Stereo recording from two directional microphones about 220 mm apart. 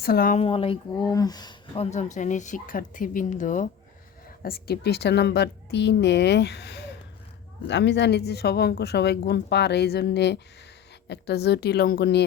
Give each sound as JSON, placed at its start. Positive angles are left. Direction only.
{"t": 0.0, "sound": "a woman's voice", "side_deg": 45}
{"t": 0.3, "sound": "a woman's voice", "side_deg": 25}